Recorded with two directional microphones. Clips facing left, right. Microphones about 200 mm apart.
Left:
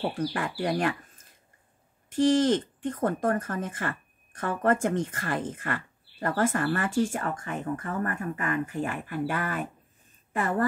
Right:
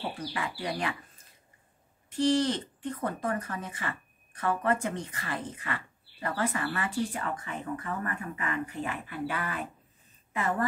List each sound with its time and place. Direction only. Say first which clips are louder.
0.0 s speech: left 6 dB; 50° left (ahead or behind)